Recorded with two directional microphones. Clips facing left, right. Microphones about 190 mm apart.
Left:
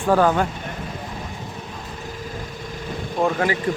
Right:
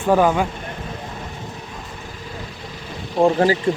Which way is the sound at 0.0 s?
15° right (ahead or behind).